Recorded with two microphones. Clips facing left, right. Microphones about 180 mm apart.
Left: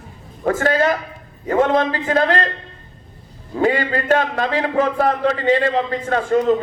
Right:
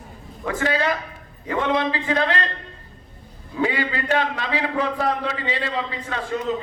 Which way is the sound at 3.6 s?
45° left (ahead or behind).